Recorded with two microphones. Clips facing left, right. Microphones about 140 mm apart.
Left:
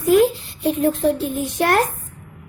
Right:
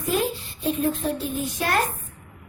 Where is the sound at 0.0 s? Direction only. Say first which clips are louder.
Left 10 dB; 75° left (ahead or behind).